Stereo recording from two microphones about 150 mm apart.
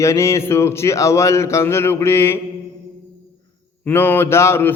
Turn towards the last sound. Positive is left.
turn(degrees=15)  # may be behind; listen again after turning